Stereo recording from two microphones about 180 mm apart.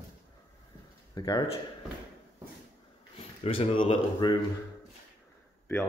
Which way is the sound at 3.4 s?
30° left (ahead or behind).